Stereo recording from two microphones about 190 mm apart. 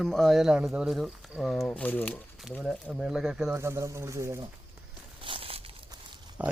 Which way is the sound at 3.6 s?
15° right (ahead or behind).